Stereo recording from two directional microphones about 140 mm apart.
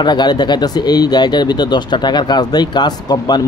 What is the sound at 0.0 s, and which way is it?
Speech, 30° left (ahead or behind).